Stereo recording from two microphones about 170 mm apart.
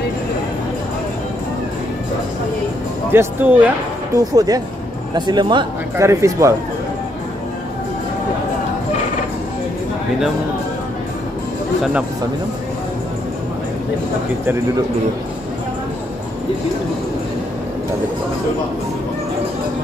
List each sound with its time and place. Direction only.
3.1 s speech: 10° right (ahead or behind)
4.2 s speech: 20° right (ahead or behind)